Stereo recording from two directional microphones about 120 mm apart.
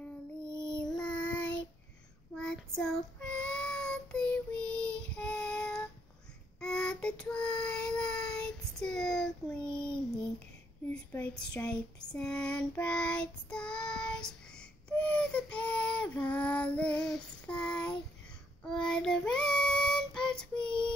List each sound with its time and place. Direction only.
0.5 s child singing: 25° right (ahead or behind)
0.7 s child singing: 5° left (ahead or behind)
10.9 s child singing: 10° left (ahead or behind)
20.5 s child singing: 40° left (ahead or behind)